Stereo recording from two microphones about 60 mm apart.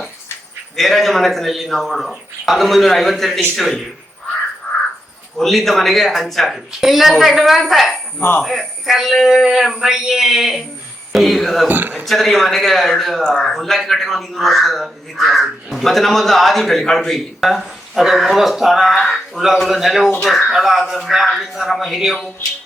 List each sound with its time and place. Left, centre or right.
0.8 s a man's voice: centre
5.4 s a man's voice: centre
11.7 s a man's voice: right
12.0 s a man's voice: centre